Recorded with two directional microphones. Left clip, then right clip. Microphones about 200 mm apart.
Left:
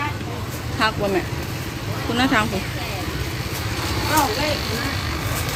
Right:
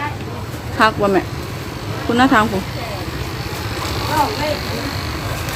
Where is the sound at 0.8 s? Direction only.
30° right (ahead or behind).